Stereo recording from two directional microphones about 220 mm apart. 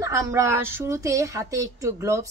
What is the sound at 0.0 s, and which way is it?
Speech, 15° right (ahead or behind).